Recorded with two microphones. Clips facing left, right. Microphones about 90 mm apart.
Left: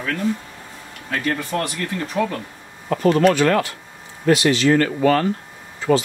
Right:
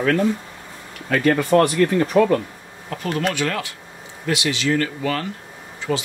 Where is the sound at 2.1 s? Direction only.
65° right (ahead or behind).